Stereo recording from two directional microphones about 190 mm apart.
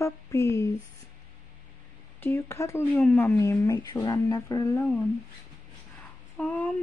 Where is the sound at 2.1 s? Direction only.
10° left (ahead or behind).